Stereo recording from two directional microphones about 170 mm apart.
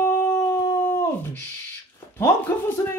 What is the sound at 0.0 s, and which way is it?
Howl, 15° left (ahead or behind).